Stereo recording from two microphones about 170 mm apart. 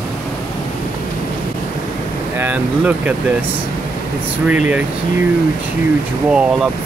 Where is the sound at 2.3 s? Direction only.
10° right (ahead or behind).